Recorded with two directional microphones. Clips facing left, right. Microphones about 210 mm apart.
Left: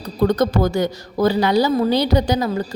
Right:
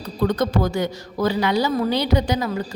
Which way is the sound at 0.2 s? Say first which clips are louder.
Left 4 dB; 40° left (ahead or behind).